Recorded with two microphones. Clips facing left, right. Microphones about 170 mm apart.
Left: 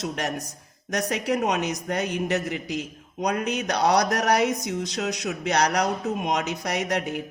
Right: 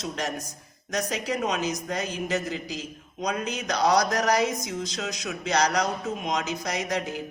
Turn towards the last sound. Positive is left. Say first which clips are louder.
# left 3 dB
turn(degrees=65)  # may be behind; listen again after turning